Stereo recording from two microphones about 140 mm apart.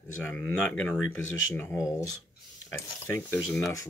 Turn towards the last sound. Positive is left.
turn(degrees=15)  # may be behind; listen again after turning